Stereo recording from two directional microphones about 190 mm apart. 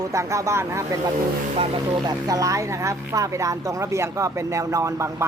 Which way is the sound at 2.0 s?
20° right (ahead or behind).